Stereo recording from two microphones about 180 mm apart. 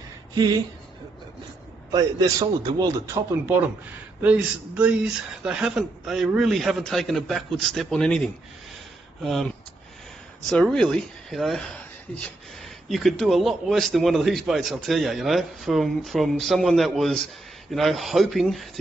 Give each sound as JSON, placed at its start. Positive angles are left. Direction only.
{"t": 0.3, "sound": "a sound", "side_deg": -20}
{"t": 1.9, "sound": "a man's voice", "side_deg": -20}
{"t": 4.2, "sound": "a man's voice", "side_deg": -10}
{"t": 10.5, "sound": "a man's voice", "side_deg": 5}
{"t": 12.8, "sound": "a man's voice", "side_deg": 0}